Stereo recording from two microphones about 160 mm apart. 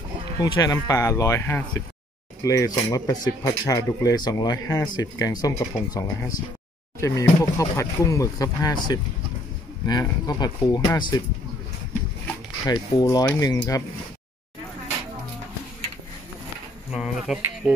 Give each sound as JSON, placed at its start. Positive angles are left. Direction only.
{"t": 0.4, "sound": "speech", "side_deg": 25}
{"t": 12.6, "sound": "speech", "side_deg": 25}
{"t": 16.9, "sound": "speech", "side_deg": -5}